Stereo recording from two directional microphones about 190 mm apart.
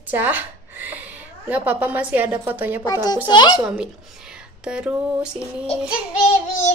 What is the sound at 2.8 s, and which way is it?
Speech, 20° left (ahead or behind).